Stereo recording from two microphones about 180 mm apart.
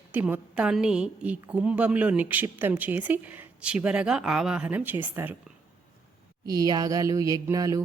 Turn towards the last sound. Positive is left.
turn(degrees=-20)  # may be behind; listen again after turning